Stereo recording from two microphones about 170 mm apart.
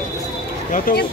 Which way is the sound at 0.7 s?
55° left (ahead or behind).